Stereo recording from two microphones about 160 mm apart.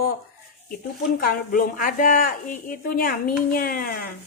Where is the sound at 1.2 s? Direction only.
65° left (ahead or behind).